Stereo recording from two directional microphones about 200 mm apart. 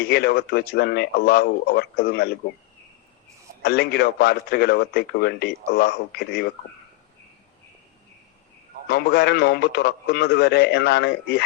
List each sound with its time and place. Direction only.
0.0 s a man's voice: 55° left (ahead or behind)
3.6 s a man's voice: 55° left (ahead or behind)
8.9 s a man's voice: 55° left (ahead or behind)